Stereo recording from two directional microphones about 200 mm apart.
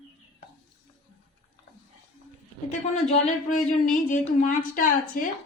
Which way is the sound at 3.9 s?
40° left (ahead or behind).